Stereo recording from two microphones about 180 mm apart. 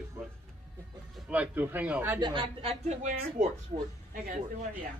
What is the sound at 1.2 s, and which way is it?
Speech, 10° right (ahead or behind).